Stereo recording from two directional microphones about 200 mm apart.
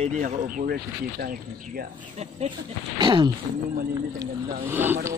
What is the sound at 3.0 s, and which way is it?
Speech, 25° right (ahead or behind).